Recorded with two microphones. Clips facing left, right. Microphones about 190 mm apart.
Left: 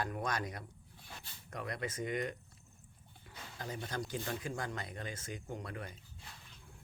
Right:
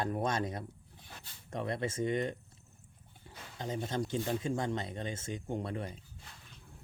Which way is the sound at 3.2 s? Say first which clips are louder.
Right 2 dB; 30° right (ahead or behind).